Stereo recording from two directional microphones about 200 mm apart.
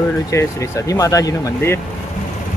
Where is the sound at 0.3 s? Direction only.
15° left (ahead or behind).